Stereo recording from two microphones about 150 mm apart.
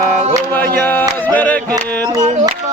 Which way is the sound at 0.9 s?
10° left (ahead or behind).